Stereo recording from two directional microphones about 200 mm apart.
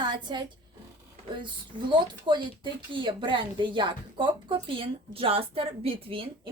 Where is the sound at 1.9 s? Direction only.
25° right (ahead or behind).